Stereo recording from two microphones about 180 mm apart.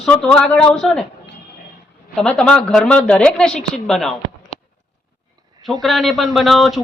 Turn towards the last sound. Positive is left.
turn(degrees=0)  # may be behind; listen again after turning